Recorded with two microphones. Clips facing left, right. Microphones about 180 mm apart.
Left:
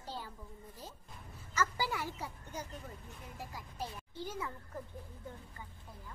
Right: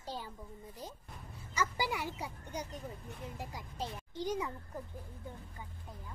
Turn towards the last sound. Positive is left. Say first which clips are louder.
# right 5 dB
turn(degrees=-15)  # may be behind; listen again after turning